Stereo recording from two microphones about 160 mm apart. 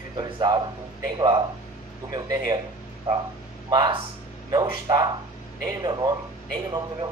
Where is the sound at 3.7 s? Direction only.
25° right (ahead or behind).